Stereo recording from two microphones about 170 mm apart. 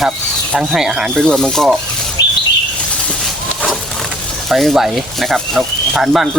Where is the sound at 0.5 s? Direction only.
Centre (ahead or behind).